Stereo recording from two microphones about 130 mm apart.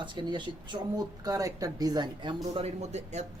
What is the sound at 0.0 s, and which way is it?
Speech, 35° right (ahead or behind).